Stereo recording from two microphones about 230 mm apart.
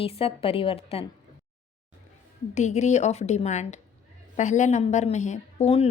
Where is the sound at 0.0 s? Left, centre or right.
Left.